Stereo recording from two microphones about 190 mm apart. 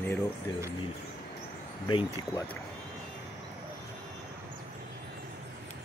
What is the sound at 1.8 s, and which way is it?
Speech, 25° left (ahead or behind).